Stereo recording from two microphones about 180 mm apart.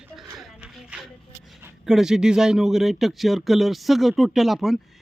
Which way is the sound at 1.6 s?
5° right (ahead or behind).